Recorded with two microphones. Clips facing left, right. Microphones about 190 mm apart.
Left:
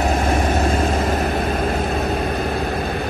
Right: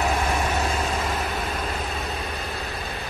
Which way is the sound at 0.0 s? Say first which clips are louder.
Left 5 dB; 45° left (ahead or behind).